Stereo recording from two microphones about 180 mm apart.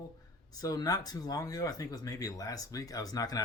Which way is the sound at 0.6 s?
20° left (ahead or behind).